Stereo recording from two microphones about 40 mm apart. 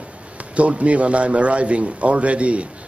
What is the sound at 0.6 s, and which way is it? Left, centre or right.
Speech, right.